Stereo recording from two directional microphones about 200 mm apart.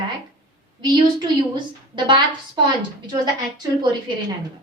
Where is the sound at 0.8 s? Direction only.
20° right (ahead or behind).